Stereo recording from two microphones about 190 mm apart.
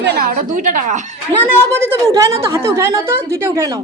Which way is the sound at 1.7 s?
15° right (ahead or behind).